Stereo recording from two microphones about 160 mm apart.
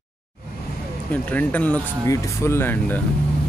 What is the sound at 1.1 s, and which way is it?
Speech, 10° left (ahead or behind).